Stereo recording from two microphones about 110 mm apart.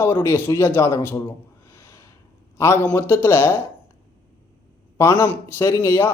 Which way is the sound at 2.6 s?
25° left (ahead or behind).